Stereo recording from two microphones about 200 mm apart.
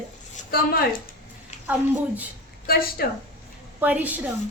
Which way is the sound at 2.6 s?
50° left (ahead or behind).